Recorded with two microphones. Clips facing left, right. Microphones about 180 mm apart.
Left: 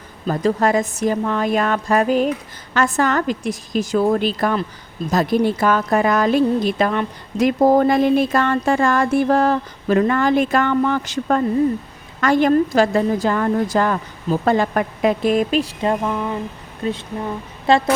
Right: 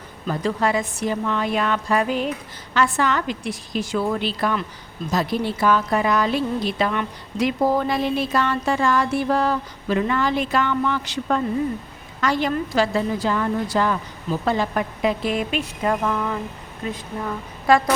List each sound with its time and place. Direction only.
0.3 s a woman's voice: 45° left (ahead or behind); by 17.8 s 25° left (ahead or behind)